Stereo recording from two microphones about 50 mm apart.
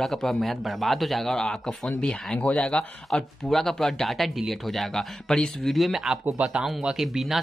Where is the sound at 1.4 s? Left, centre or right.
Centre.